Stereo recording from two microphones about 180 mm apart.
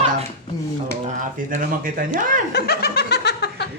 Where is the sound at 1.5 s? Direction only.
45° right (ahead or behind).